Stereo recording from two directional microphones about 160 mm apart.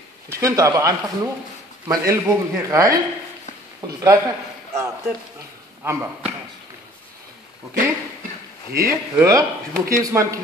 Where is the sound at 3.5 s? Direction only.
45° left (ahead or behind).